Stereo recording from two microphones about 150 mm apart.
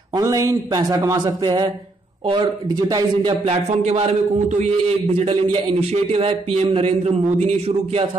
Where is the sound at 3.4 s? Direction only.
45° right (ahead or behind).